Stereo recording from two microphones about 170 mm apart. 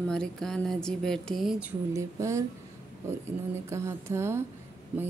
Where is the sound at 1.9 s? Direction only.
15° right (ahead or behind).